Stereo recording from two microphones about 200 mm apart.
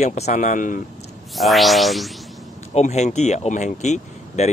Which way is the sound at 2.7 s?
35° left (ahead or behind).